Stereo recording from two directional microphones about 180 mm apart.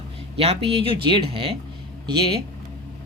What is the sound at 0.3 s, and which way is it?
Speech, 35° right (ahead or behind).